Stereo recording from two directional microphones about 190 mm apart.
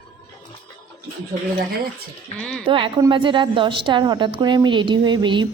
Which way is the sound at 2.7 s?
25° right (ahead or behind).